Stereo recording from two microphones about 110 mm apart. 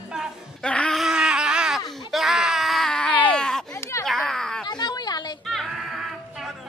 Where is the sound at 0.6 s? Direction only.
10° left (ahead or behind).